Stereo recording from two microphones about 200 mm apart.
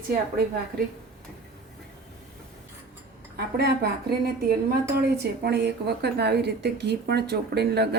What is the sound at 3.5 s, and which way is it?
A woman's voice, 55° right (ahead or behind).